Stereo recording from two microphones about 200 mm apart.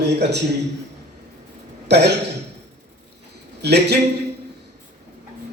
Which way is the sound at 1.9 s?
55° right (ahead or behind).